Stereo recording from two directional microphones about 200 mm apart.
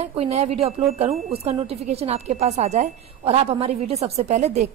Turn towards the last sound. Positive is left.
turn(degrees=-35)  # may be behind; listen again after turning